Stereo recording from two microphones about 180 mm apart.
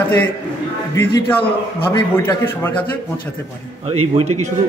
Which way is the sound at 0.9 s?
10° left (ahead or behind).